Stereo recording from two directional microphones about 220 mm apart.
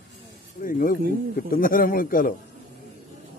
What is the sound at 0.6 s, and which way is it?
A man's voice, 40° left (ahead or behind).